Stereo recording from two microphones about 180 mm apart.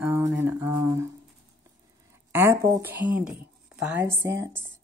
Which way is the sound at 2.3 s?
15° right (ahead or behind).